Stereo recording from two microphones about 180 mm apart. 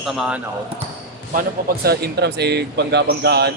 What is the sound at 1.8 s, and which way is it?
Speech, 65° right (ahead or behind).